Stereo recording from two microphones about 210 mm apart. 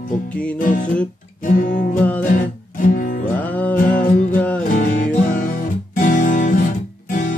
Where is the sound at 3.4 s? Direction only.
5° left (ahead or behind).